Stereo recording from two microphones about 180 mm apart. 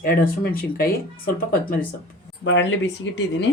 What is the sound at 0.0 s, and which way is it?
Speech, 55° left (ahead or behind).